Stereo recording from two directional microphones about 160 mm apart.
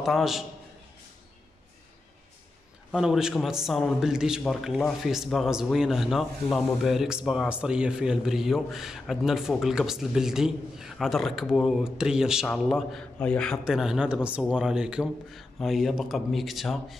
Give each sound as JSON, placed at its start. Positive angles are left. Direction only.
{"t": 0.0, "sound": "a man's voice", "side_deg": 0}
{"t": 2.9, "sound": "a man's voice", "side_deg": -5}